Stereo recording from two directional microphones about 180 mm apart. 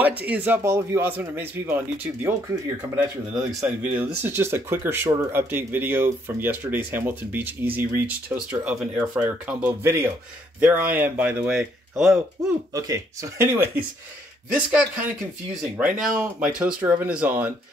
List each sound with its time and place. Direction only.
0.0 s speech: 10° right (ahead or behind)
3.3 s speech: 10° right (ahead or behind)
12.7 s speech: 20° right (ahead or behind)